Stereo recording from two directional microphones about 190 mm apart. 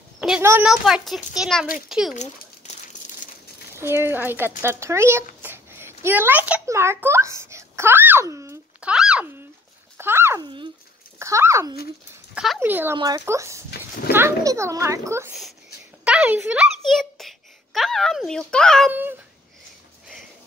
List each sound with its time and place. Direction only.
0.4 s a sound: 15° right (ahead or behind)
0.7 s a child's voice: centre (ahead or behind)
2.1 s crumpling: 40° left (ahead or behind)
3.7 s speech: 10° right (ahead or behind)
5.4 s a sound: 10° right (ahead or behind)
8.9 s speech: 5° right (ahead or behind)
9.9 s a sound: 10° right (ahead or behind)
11.1 s a child's voice: 15° right (ahead or behind); by 18.9 s 5° left (ahead or behind)
18.9 s speech: 10° right (ahead or behind)